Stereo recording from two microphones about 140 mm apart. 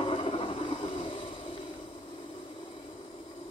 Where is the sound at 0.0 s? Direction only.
40° left (ahead or behind).